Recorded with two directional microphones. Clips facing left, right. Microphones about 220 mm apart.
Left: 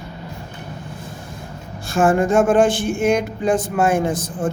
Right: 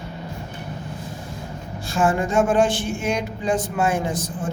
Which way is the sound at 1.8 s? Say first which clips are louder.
Left 5 dB; 50° left (ahead or behind).